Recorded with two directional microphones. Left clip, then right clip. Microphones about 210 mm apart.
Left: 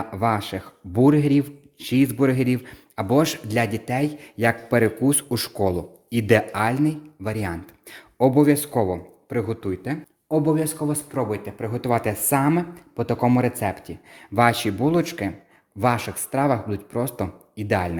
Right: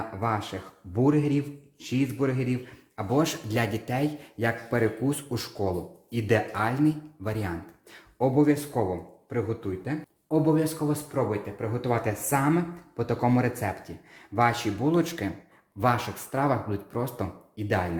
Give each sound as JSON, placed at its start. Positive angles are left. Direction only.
{"t": 0.2, "sound": "speech", "side_deg": 45}
{"t": 10.2, "sound": "speech", "side_deg": 35}